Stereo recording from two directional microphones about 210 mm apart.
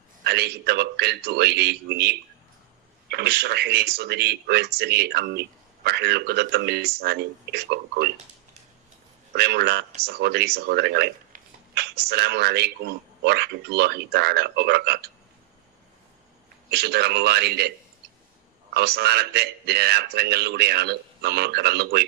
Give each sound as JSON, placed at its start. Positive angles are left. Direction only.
{"t": 0.3, "sound": "speech", "side_deg": -50}
{"t": 9.3, "sound": "speech", "side_deg": -50}
{"t": 16.7, "sound": "speech", "side_deg": -50}